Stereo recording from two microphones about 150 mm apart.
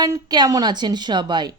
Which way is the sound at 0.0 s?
25° right (ahead or behind).